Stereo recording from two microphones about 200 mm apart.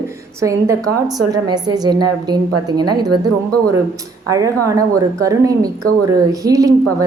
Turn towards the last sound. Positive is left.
turn(degrees=-15)  # may be behind; listen again after turning